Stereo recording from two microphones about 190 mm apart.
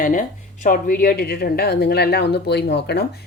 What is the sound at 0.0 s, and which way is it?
A woman's voice, 45° left (ahead or behind).